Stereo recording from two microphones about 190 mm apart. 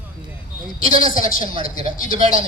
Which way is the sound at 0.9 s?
30° right (ahead or behind).